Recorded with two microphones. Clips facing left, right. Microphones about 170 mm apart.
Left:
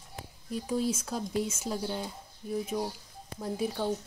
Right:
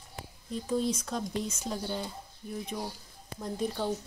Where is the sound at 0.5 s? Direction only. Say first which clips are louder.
Even; 10° left (ahead or behind).